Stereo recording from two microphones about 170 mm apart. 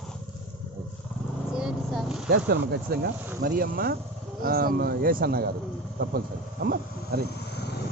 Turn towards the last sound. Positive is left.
turn(degrees=75)  # may be behind; listen again after turning